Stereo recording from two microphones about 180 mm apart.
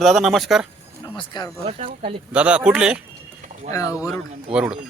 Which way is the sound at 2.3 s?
5° right (ahead or behind).